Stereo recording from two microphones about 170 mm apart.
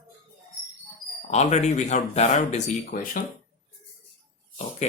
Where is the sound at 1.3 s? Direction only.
40° left (ahead or behind).